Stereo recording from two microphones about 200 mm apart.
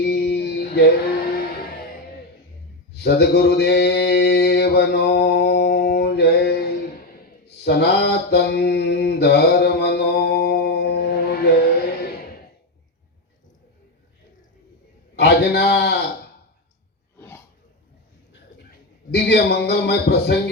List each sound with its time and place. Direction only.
0.0 s music: 55° left (ahead or behind)
2.9 s mantra: 55° left (ahead or behind)
15.2 s a sound: 55° left (ahead or behind)
17.2 s throat clearing: 10° left (ahead or behind)
19.1 s a man's voice: 55° left (ahead or behind)